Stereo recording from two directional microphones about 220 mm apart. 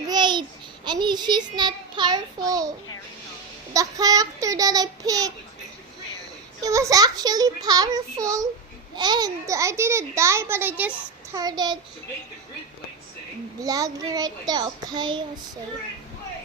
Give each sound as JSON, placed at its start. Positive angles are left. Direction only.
{"t": 0.1, "sound": "babbling", "side_deg": -20}
{"t": 0.9, "sound": "a child's voice", "side_deg": -20}
{"t": 3.8, "sound": "a child's voice", "side_deg": -15}
{"t": 6.6, "sound": "a child's voice", "side_deg": -15}
{"t": 13.6, "sound": "a child's voice", "side_deg": -15}